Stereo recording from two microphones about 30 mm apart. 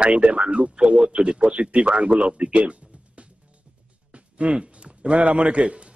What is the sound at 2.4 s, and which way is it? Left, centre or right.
Speech, right.